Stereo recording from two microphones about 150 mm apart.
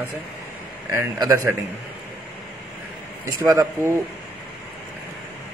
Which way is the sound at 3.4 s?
20° right (ahead or behind).